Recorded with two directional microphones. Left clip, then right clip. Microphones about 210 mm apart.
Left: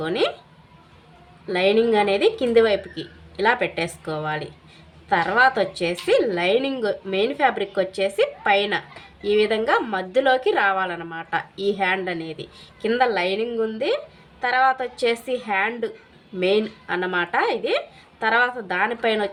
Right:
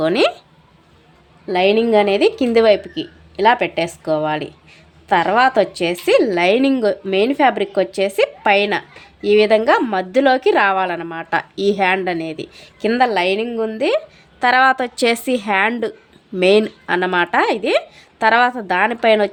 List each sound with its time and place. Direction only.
0.0 s speech: 45° right (ahead or behind)
1.5 s a woman's voice: 35° right (ahead or behind)